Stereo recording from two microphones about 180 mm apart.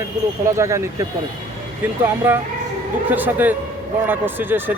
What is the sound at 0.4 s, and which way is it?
Speech, 15° right (ahead or behind).